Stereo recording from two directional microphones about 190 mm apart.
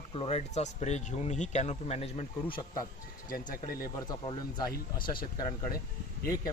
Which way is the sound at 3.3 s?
50° left (ahead or behind).